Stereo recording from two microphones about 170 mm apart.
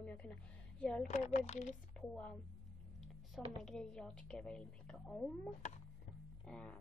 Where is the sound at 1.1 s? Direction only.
45° left (ahead or behind).